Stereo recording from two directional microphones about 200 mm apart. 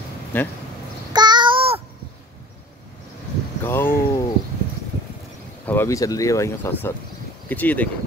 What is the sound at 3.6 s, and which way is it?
Speech, 10° left (ahead or behind).